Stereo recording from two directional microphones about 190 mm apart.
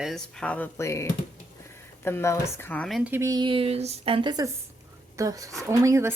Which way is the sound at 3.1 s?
15° right (ahead or behind).